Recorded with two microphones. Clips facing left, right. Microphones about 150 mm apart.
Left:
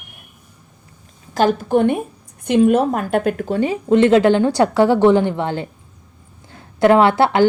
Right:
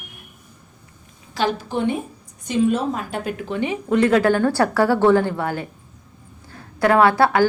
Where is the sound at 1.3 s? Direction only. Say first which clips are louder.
Left 7 dB; 50° left (ahead or behind); by 5.7 s 25° left (ahead or behind).